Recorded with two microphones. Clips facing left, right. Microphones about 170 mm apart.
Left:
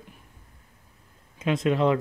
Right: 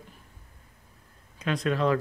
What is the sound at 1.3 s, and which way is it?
Speech, 25° left (ahead or behind).